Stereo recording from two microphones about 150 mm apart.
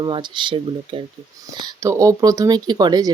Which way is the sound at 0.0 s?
30° right (ahead or behind).